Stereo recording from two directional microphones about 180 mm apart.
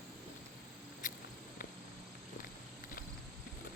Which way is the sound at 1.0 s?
50° left (ahead or behind).